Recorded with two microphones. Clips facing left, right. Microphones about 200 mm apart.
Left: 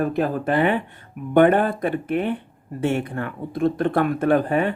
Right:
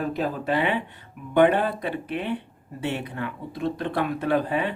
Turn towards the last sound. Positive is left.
turn(degrees=50)  # may be behind; listen again after turning